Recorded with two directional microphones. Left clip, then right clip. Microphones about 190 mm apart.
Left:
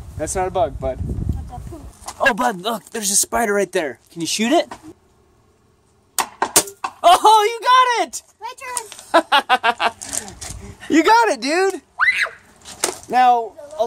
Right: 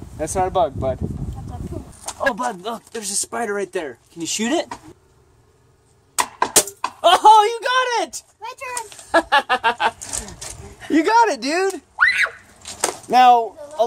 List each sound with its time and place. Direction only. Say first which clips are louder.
0.2 s speech: right 1 dB; centre (ahead or behind)
2.1 s speech: left 4 dB; 40° left (ahead or behind)
6.1 s a sound: even; 55° left (ahead or behind)
7.0 s speech: even; 20° left (ahead or behind)
8.4 s speech: even; 40° left (ahead or behind)
9.1 s a sound: left 2 dB; 25° left (ahead or behind)
10.5 s speech: left 2 dB; 30° left (ahead or behind)
12.0 s a sound: right 1 dB; 5° left (ahead or behind)
13.1 s speech: right 2 dB; 20° right (ahead or behind)